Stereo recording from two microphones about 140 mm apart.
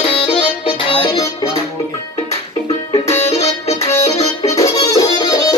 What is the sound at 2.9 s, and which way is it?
Music, 50° left (ahead or behind).